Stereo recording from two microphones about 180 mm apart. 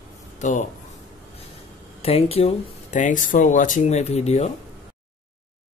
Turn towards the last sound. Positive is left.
turn(degrees=35)  # may be behind; listen again after turning